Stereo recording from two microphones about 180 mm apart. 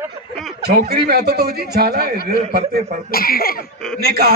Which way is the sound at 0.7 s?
60° right (ahead or behind).